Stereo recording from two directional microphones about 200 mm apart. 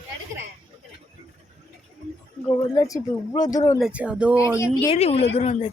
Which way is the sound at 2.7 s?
15° left (ahead or behind).